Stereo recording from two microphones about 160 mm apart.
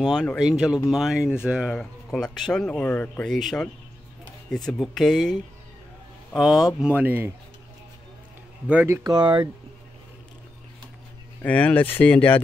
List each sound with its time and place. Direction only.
0.0 s speech: 5° left (ahead or behind); by 7.3 s 10° right (ahead or behind)
8.6 s speech: 15° right (ahead or behind)
11.4 s speech: 10° left (ahead or behind)